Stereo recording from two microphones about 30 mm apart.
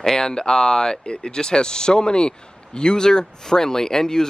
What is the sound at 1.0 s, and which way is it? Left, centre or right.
Speech, left.